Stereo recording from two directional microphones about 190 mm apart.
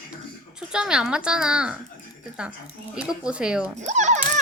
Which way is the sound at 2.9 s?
5° right (ahead or behind).